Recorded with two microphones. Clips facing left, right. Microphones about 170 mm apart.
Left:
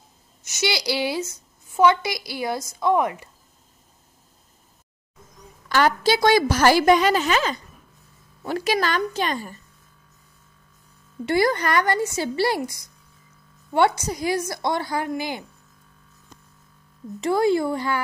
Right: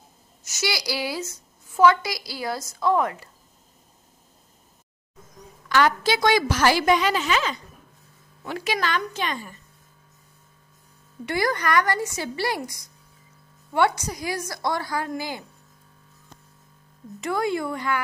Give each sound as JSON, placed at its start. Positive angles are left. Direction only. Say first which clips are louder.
{"t": 0.5, "sound": "a woman's voice", "louder": "left 3 dB", "side_deg": 25}
{"t": 5.7, "sound": "a woman's voice", "louder": "left 1 dB", "side_deg": 35}
{"t": 11.2, "sound": "a woman's voice", "louder": "left 4 dB", "side_deg": 30}
{"t": 17.2, "sound": "a woman's voice", "louder": "left 5 dB", "side_deg": 30}